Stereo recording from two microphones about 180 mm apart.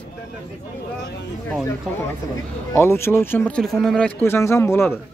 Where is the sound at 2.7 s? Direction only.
15° left (ahead or behind).